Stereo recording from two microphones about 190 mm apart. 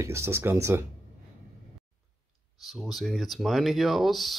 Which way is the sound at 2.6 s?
Centre (ahead or behind).